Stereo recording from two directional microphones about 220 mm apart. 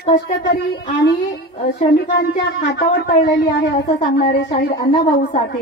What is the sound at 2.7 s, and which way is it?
Speech, 45° left (ahead or behind).